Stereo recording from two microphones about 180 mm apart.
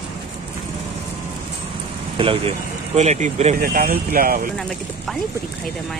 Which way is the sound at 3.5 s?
55° right (ahead or behind).